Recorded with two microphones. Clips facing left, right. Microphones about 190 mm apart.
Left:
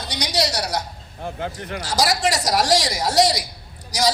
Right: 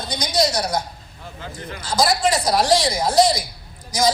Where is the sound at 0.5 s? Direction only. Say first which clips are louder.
Right 2 dB; 65° left (ahead or behind).